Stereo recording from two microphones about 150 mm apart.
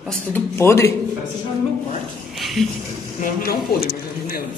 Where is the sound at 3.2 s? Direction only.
80° left.